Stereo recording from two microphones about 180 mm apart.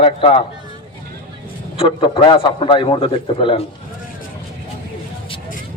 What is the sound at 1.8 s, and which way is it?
A man's voice, 30° left (ahead or behind).